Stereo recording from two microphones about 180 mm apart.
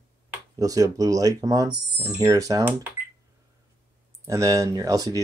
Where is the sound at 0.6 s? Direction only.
20° right (ahead or behind).